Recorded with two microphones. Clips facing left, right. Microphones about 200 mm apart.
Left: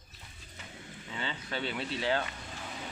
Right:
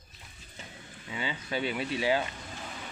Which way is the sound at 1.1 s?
10° right (ahead or behind).